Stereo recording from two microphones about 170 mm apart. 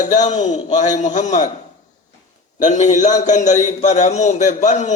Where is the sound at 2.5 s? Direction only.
45° left (ahead or behind).